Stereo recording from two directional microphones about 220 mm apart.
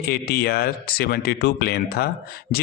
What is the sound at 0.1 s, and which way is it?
Speech, 45° left (ahead or behind).